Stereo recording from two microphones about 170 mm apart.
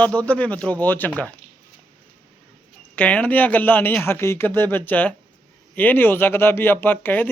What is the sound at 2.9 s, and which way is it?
Speech, 10° left (ahead or behind).